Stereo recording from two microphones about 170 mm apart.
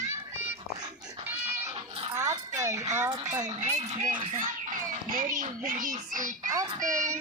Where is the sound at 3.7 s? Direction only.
45° right (ahead or behind).